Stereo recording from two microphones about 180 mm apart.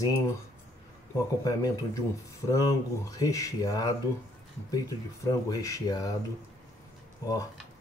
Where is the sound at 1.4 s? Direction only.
20° left (ahead or behind).